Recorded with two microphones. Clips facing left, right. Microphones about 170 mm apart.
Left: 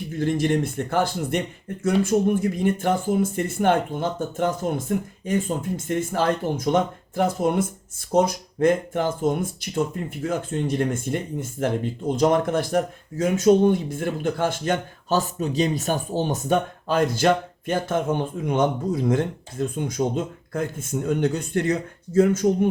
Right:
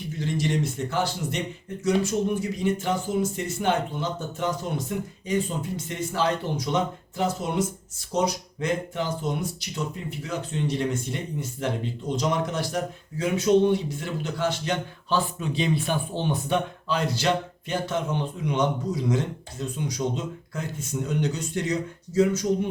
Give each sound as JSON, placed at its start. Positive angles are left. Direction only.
{"t": 0.2, "sound": "speech", "side_deg": 55}